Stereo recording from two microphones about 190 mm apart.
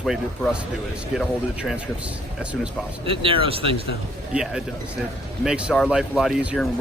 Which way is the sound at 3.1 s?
30° right (ahead or behind).